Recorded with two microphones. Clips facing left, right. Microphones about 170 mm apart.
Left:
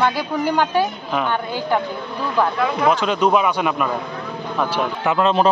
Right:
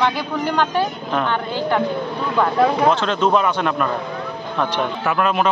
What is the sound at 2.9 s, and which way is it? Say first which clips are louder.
Speech: even; 10° left (ahead or behind).